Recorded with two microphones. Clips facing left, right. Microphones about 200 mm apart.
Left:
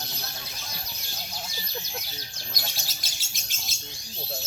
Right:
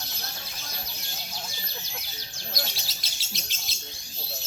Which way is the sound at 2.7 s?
50° left (ahead or behind).